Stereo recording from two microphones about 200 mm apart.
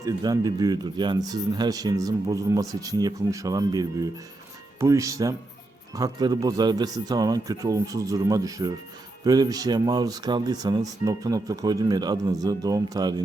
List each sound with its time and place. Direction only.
0.0 s speech: 20° right (ahead or behind)